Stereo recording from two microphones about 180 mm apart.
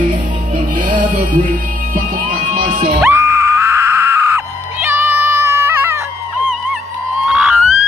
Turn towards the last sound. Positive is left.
turn(degrees=-5)  # may be behind; listen again after turning